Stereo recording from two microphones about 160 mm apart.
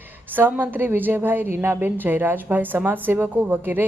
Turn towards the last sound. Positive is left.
turn(degrees=-10)  # may be behind; listen again after turning